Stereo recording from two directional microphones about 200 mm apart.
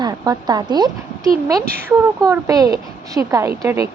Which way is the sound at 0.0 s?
20° right (ahead or behind).